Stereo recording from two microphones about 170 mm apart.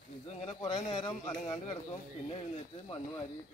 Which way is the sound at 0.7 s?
30° left (ahead or behind).